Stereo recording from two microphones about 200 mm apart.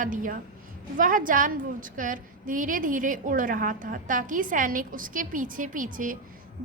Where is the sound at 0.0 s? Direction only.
40° right (ahead or behind).